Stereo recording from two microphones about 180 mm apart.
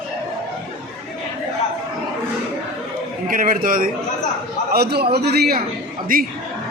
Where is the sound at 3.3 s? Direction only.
50° right (ahead or behind).